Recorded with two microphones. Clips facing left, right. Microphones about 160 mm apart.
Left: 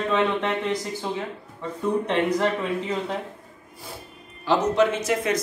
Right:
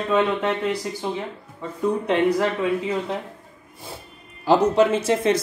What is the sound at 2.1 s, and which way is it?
Speech, 5° right (ahead or behind).